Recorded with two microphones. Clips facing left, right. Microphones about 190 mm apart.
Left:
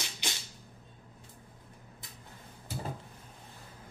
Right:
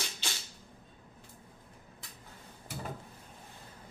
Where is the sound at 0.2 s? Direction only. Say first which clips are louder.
Left 5 dB; 15° left (ahead or behind).